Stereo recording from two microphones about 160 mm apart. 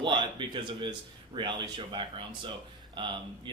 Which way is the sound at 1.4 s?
30° right (ahead or behind).